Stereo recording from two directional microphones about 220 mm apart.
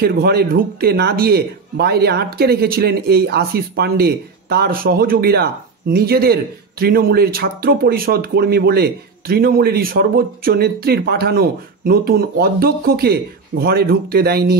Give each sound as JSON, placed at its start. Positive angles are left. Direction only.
{"t": 0.0, "sound": "speech", "side_deg": -45}